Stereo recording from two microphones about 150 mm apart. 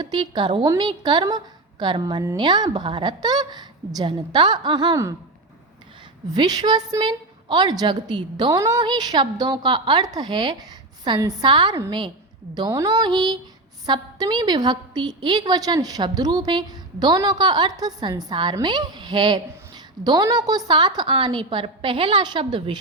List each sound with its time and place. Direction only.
0.0 s a woman's voice: 30° right (ahead or behind)
6.3 s a woman's voice: 25° right (ahead or behind)